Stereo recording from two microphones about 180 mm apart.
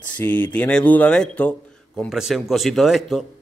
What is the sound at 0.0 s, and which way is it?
A man's voice, 10° left (ahead or behind).